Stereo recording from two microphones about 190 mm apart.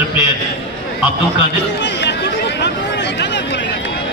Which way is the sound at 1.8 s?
65° left (ahead or behind).